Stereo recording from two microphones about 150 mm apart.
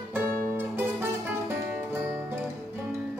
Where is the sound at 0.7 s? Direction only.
15° right (ahead or behind).